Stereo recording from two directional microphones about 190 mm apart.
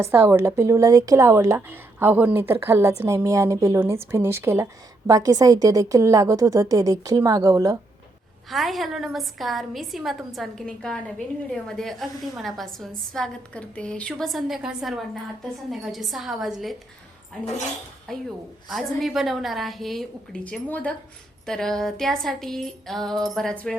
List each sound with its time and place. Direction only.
0.0 s speech: 10° right (ahead or behind)
8.4 s a woman's voice: centre (ahead or behind)
18.1 s a woman's voice: 5° left (ahead or behind)